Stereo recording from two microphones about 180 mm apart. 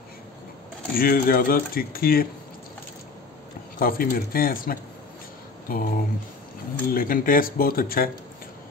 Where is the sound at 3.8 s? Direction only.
55° left (ahead or behind).